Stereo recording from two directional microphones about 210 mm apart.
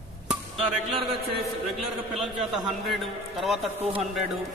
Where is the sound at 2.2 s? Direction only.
Centre (ahead or behind).